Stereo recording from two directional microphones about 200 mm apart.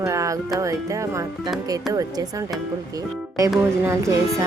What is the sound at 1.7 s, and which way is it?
Speech, 20° right (ahead or behind).